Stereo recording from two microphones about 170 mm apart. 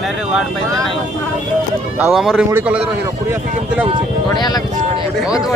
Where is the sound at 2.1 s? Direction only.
Centre (ahead or behind).